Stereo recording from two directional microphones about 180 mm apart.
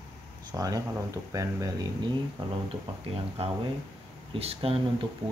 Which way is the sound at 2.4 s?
30° right (ahead or behind).